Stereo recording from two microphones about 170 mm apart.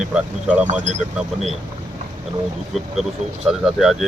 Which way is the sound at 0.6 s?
45° right (ahead or behind).